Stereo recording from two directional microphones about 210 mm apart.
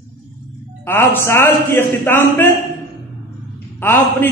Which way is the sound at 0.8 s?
10° left (ahead or behind).